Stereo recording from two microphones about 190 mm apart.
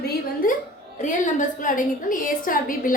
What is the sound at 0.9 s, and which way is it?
A woman's voice, 40° left (ahead or behind).